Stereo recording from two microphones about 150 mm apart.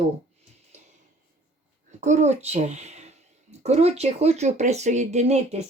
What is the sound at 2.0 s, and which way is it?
Speech, 50° right (ahead or behind).